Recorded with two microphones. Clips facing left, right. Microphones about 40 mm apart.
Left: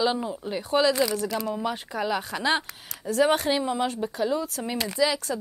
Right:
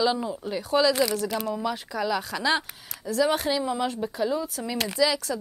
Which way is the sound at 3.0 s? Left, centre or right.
Left.